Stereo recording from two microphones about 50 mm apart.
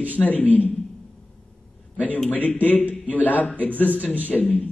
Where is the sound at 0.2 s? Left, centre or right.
Left.